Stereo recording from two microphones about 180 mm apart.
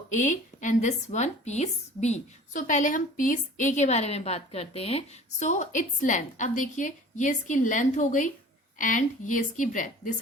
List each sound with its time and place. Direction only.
0.1 s speech: 45° left (ahead or behind)